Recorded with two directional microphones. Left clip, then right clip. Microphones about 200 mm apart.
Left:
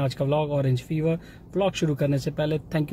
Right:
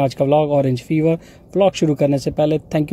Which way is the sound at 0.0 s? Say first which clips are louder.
Right 10 dB; 30° right (ahead or behind).